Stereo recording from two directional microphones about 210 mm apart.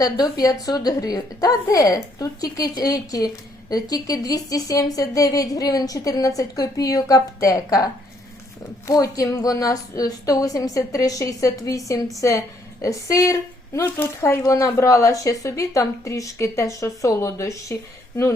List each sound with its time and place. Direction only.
0.0 s a woman's voice: 15° left (ahead or behind)
8.9 s a woman's voice: 15° left (ahead or behind)
12.8 s a woman's voice: 15° left (ahead or behind)